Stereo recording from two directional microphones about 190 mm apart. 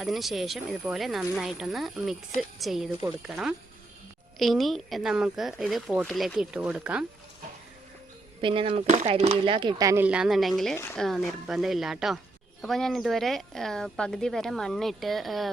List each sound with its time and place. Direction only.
0.0 s speech: centre (ahead or behind)
8.4 s speech: 25° right (ahead or behind)
9.5 s speech: 25° right (ahead or behind); by 15.4 s centre (ahead or behind)